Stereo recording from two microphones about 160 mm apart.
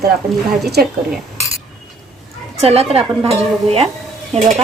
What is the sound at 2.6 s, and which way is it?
A woman's voice, 40° right (ahead or behind).